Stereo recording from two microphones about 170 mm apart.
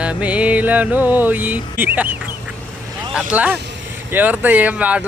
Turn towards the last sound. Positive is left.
turn(degrees=-10)  # may be behind; listen again after turning